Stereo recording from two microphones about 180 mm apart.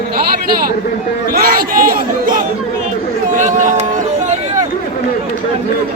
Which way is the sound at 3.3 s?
40° right (ahead or behind).